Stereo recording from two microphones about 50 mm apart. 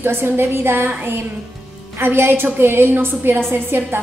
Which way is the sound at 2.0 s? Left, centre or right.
Right.